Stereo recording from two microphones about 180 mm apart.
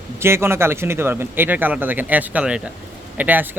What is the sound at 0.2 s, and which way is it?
A man's voice, 15° right (ahead or behind).